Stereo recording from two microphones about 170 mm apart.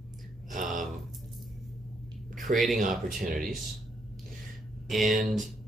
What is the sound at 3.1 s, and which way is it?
Speech, 55° right (ahead or behind).